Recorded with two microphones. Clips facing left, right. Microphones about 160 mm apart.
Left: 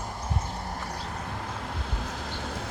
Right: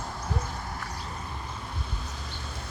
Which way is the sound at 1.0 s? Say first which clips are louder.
Left 3 dB; 75° left (ahead or behind).